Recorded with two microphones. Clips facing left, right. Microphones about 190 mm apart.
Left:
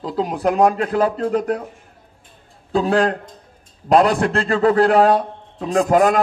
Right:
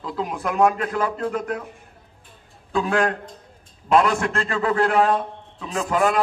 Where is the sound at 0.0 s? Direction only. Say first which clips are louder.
Left 7 dB; 35° left (ahead or behind).